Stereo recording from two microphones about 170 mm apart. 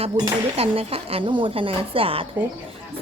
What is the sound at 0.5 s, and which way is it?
Speech, 35° right (ahead or behind).